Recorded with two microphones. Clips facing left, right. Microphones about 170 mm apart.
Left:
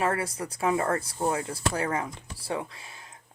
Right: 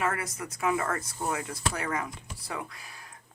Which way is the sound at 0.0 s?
30° left (ahead or behind).